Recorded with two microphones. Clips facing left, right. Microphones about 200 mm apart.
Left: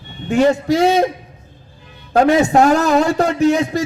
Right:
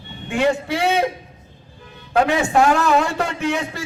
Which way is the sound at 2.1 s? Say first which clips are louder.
Left 5 dB; 40° left (ahead or behind).